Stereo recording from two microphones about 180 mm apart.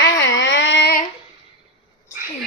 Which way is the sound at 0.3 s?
90° left.